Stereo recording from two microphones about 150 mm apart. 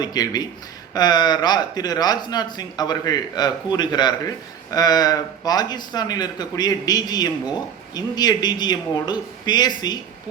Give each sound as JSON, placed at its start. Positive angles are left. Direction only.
{"t": 0.0, "sound": "a man's voice", "side_deg": 25}